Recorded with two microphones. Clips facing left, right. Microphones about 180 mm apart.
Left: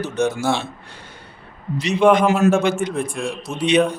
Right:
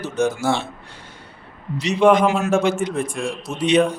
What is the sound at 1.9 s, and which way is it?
Speech, centre (ahead or behind).